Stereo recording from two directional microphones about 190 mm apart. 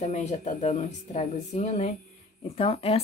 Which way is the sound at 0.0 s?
35° left (ahead or behind).